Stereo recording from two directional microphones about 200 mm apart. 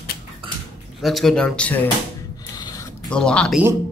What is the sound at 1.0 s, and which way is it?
Speech, centre (ahead or behind).